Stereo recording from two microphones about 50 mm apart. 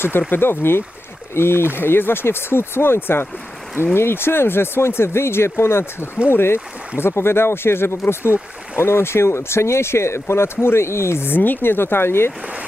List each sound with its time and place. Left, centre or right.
0.3 s speech: left
11.3 s speech: left